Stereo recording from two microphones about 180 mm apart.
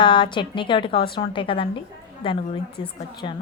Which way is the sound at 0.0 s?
25° left (ahead or behind).